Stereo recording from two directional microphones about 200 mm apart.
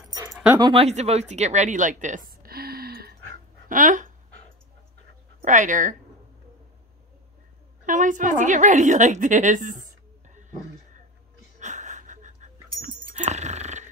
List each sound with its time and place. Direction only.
0.5 s speech: 20° right (ahead or behind); by 4.1 s 40° right (ahead or behind)
5.4 s speech: 40° right (ahead or behind)
7.8 s a woman's voice: 40° right (ahead or behind)
11.6 s wheeze: 40° right (ahead or behind)
12.8 s dog: 35° right (ahead or behind)